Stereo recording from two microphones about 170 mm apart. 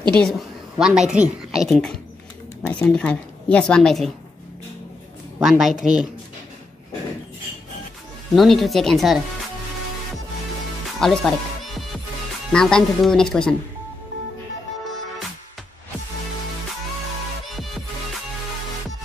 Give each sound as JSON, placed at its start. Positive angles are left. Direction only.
{"t": 0.1, "sound": "a woman's voice", "side_deg": 0}
{"t": 5.4, "sound": "a woman's voice", "side_deg": 0}
{"t": 8.4, "sound": "a woman's voice", "side_deg": 0}
{"t": 11.0, "sound": "music", "side_deg": 0}
{"t": 12.5, "sound": "a woman's voice", "side_deg": 5}